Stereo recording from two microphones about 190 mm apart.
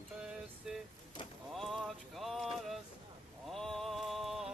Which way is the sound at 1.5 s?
Centre (ahead or behind).